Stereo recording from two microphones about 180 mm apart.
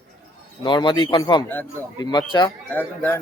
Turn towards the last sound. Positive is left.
turn(degrees=10)  # may be behind; listen again after turning